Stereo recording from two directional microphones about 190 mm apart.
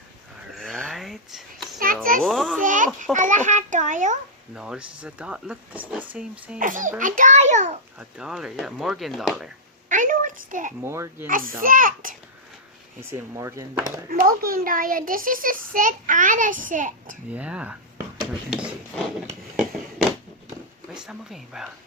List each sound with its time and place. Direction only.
0.5 s a sound: 5° left (ahead or behind)
2.6 s a sound: 45° right (ahead or behind)
4.5 s speech: 5° right (ahead or behind)
6.6 s a child's voice: 45° right (ahead or behind)
7.9 s speech: 5° right (ahead or behind)
9.9 s a sound: 45° right (ahead or behind)
10.8 s speech: 15° right (ahead or behind)
11.3 s a child's voice: 45° right (ahead or behind)
13.0 s speech: 15° right (ahead or behind)
14.1 s a child's voice: 50° right (ahead or behind)
17.3 s speech: 5° right (ahead or behind)
18.2 s a sound: 5° right (ahead or behind)
20.9 s speech: 5° right (ahead or behind)